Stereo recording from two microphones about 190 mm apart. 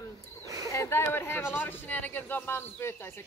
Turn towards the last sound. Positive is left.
turn(degrees=15)  # may be behind; listen again after turning